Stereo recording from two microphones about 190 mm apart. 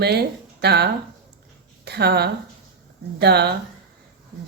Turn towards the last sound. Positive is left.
turn(degrees=-60)  # may be behind; listen again after turning